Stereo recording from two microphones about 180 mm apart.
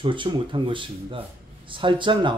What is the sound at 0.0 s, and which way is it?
A man's voice, 25° right (ahead or behind).